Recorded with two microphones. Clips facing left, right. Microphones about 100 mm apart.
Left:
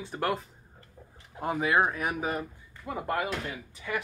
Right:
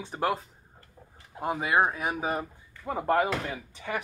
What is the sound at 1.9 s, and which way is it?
Speech, 25° right (ahead or behind).